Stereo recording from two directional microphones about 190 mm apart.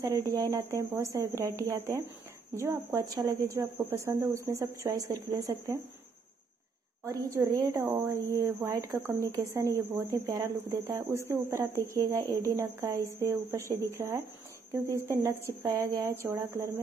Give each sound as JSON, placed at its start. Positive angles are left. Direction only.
{"t": 0.0, "sound": "speech", "side_deg": -15}
{"t": 7.1, "sound": "speech", "side_deg": -15}